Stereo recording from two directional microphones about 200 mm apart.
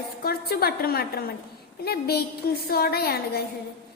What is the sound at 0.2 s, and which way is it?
A woman's voice, 50° left (ahead or behind).